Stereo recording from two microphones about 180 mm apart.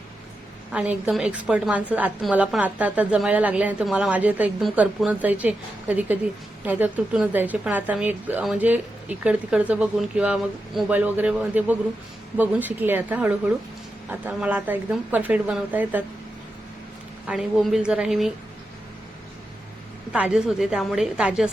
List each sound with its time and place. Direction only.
0.7 s a woman's voice: 5° right (ahead or behind)
17.2 s a woman's voice: centre (ahead or behind)
20.1 s a woman's voice: 5° right (ahead or behind)